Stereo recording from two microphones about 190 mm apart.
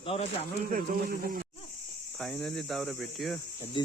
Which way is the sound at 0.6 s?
50° right (ahead or behind).